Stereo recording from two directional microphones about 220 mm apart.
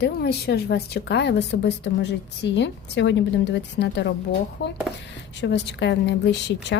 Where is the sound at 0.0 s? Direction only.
45° left (ahead or behind).